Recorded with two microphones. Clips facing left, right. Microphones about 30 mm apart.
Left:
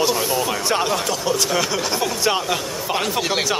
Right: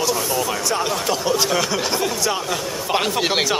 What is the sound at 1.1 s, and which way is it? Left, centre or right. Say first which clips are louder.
Speech: right 1 dB; centre.